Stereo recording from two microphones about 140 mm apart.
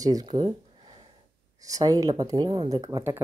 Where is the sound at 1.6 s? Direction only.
25° right (ahead or behind).